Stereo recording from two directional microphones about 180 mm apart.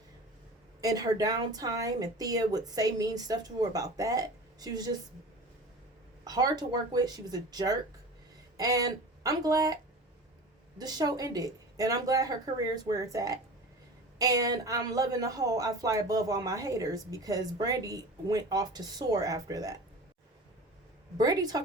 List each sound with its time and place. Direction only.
0.8 s speech: 20° right (ahead or behind)
6.2 s speech: 20° right (ahead or behind)
10.8 s speech: 20° right (ahead or behind)
21.2 s speech: 20° right (ahead or behind)